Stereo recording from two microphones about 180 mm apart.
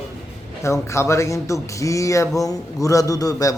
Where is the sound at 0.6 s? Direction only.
15° left (ahead or behind).